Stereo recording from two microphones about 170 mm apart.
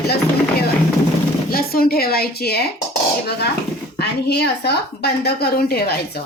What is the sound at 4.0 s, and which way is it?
Speech, 75° left (ahead or behind).